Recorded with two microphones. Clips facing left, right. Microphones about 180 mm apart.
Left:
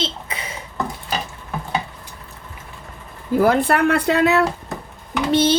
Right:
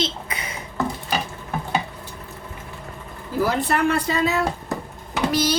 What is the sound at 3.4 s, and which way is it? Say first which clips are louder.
Speech: left 4 dB; 60° left (ahead or behind).